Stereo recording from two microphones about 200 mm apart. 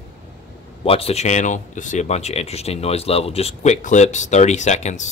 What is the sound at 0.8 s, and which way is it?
Speech, 30° left (ahead or behind).